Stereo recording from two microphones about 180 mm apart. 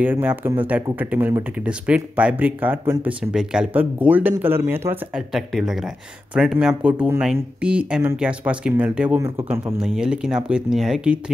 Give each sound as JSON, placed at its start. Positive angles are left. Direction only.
{"t": 0.0, "sound": "speech", "side_deg": -10}